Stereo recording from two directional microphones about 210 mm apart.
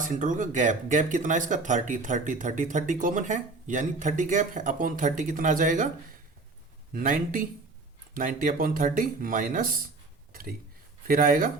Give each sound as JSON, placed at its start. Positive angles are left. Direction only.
{"t": 0.0, "sound": "speech", "side_deg": -40}
{"t": 6.9, "sound": "speech", "side_deg": -40}
{"t": 11.0, "sound": "speech", "side_deg": -40}